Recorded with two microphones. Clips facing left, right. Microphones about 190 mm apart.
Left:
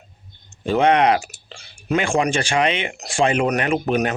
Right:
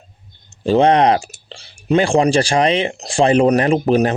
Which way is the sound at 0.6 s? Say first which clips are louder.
Right 4 dB; 35° right (ahead or behind).